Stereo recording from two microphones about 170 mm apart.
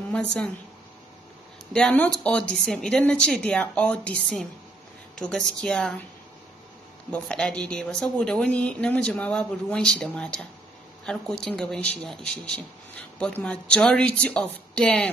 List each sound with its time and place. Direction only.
0.1 s speech: 5° left (ahead or behind)
1.7 s speech: 5° left (ahead or behind)
7.1 s speech: 5° left (ahead or behind)